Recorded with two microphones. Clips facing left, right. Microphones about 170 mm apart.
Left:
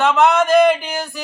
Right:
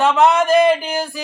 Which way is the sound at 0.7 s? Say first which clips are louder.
Right 1 dB; 30° right (ahead or behind).